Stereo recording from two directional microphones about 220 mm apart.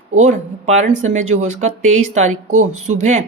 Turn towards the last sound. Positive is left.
turn(degrees=-30)  # may be behind; listen again after turning